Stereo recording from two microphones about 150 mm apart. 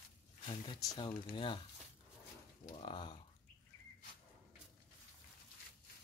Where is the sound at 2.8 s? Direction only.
30° left (ahead or behind).